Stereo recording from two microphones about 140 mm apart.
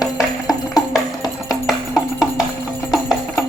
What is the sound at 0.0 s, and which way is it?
Music, 25° left (ahead or behind).